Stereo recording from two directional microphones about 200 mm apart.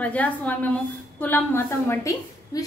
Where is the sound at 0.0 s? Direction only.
5° left (ahead or behind).